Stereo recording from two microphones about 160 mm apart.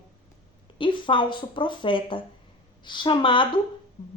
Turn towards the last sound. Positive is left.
turn(degrees=30)  # may be behind; listen again after turning